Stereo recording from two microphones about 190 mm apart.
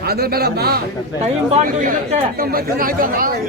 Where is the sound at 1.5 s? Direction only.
40° right (ahead or behind).